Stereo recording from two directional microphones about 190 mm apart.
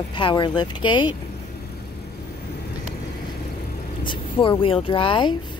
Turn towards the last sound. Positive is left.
turn(degrees=25)  # may be behind; listen again after turning